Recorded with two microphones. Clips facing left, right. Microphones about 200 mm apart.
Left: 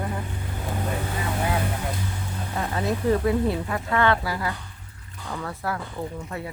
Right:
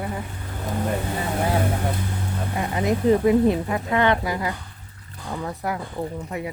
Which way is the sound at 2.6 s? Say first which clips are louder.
Right 3 dB; 15° right (ahead or behind).